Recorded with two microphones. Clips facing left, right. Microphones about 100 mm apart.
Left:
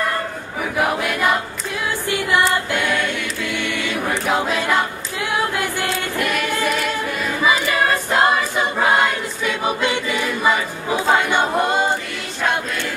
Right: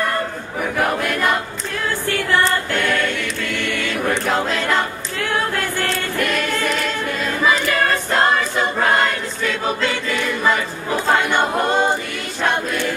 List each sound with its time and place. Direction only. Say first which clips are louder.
0.6 s choir: even; 5° left (ahead or behind)
2.0 s music: even; 15° left (ahead or behind)
2.4 s choir: even; 10° left (ahead or behind)